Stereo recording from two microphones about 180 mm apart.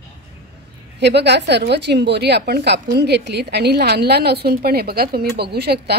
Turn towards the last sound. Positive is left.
turn(degrees=-65)  # may be behind; listen again after turning